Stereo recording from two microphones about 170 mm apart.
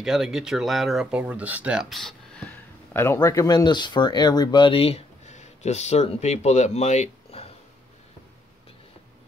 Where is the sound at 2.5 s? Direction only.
15° left (ahead or behind).